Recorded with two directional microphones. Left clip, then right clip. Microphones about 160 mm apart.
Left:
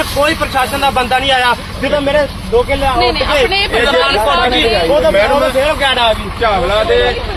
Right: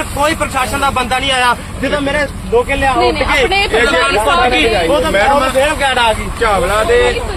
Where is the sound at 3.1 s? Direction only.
90° right.